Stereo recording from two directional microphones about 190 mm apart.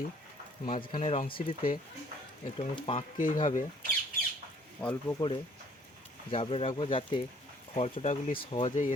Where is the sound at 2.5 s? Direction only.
30° left (ahead or behind).